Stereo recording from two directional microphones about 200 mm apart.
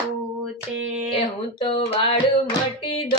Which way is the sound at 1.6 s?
25° left (ahead or behind).